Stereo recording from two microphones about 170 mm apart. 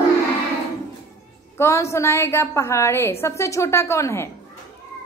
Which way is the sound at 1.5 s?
15° left (ahead or behind).